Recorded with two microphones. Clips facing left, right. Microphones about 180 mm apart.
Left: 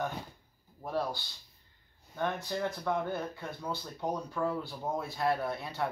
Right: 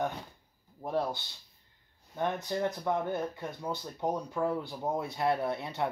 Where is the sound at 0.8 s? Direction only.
20° right (ahead or behind).